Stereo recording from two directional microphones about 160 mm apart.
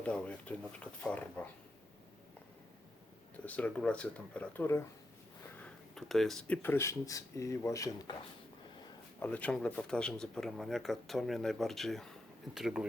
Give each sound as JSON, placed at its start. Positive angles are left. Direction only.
{"t": 0.0, "sound": "speech", "side_deg": 5}
{"t": 3.4, "sound": "speech", "side_deg": 10}
{"t": 5.6, "sound": "speech", "side_deg": 0}
{"t": 9.2, "sound": "speech", "side_deg": 10}